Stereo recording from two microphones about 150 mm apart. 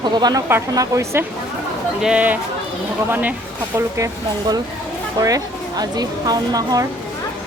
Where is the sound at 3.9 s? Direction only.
20° right (ahead or behind).